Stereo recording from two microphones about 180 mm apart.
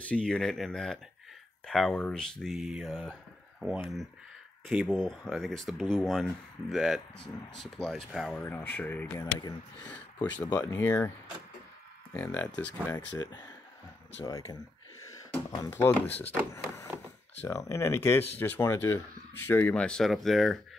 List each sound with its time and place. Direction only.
0.1 s speech: 5° left (ahead or behind)
4.6 s speech: centre (ahead or behind)
12.1 s speech: 10° left (ahead or behind)
13.2 s speech: 20° left (ahead or behind); by 20.5 s centre (ahead or behind)